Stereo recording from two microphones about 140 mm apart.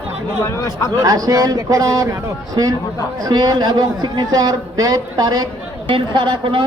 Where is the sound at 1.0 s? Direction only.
25° right (ahead or behind).